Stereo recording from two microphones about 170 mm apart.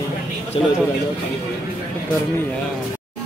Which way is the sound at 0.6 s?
30° left (ahead or behind).